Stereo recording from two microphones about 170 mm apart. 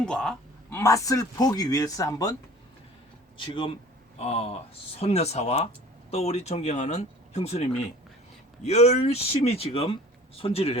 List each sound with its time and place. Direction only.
0.0 s a sound: 5° left (ahead or behind)
0.8 s speech: 15° left (ahead or behind)
3.3 s speech: 30° left (ahead or behind)